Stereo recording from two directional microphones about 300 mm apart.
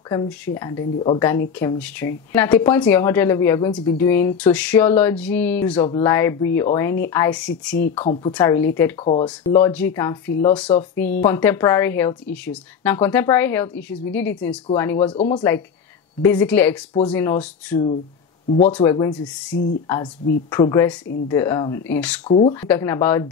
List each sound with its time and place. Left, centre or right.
0.6 s speech: centre
1.6 s speech: centre
7.9 s speech: centre
9.0 s speech: centre
22.3 s speech: centre